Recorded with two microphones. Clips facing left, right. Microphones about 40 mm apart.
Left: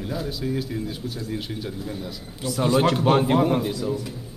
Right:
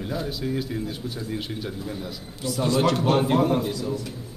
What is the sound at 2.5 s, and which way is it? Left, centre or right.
A man's voice, centre.